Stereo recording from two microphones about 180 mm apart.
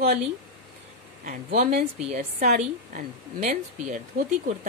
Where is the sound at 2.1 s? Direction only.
45° right (ahead or behind).